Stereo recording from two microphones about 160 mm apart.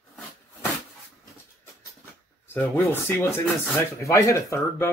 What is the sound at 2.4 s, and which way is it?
Speech, 15° left (ahead or behind).